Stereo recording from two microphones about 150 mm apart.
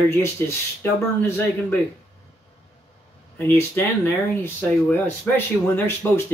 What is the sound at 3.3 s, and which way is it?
Speech, 15° left (ahead or behind).